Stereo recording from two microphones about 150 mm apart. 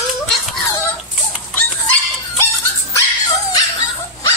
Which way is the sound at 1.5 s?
10° left (ahead or behind).